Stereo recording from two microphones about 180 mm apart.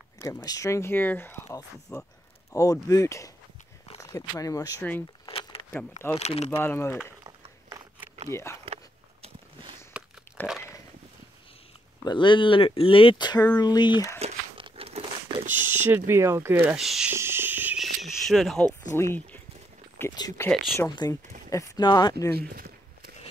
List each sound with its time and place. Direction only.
0.2 s speech: 20° left (ahead or behind)
5.2 s keys jangling: 25° left (ahead or behind)
6.1 s speech: 35° left (ahead or behind)
6.5 s speech: 15° left (ahead or behind)
8.3 s speech: 15° left (ahead or behind)
9.9 s a sound: 5° right (ahead or behind)
12.0 s speech: 25° left (ahead or behind)
14.2 s crumpling: 35° right (ahead or behind)
15.5 s speech: 10° right (ahead or behind)
17.1 s a sound: 15° right (ahead or behind)
18.9 s speech: 10° left (ahead or behind)
20.8 s speech: 20° left (ahead or behind)
22.3 s walk: 55° right (ahead or behind)